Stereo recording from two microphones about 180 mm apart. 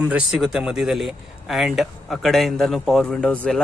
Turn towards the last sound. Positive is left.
turn(degrees=5)  # may be behind; listen again after turning